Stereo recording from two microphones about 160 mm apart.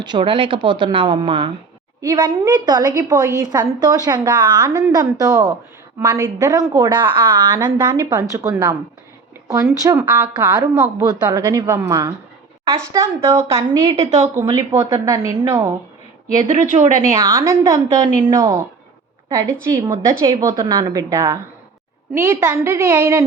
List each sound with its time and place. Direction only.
0.0 s a woman's voice: 30° right (ahead or behind)
13.9 s a woman's voice: 40° right (ahead or behind)
14.3 s a woman's voice: 20° right (ahead or behind)
16.5 s speech: 50° right (ahead or behind)
17.0 s a woman's voice: 20° right (ahead or behind)
19.7 s a woman's voice: 30° right (ahead or behind)